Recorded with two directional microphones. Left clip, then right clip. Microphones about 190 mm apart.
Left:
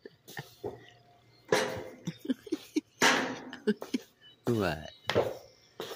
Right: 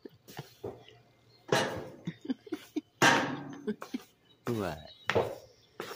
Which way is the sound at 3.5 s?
30° left (ahead or behind).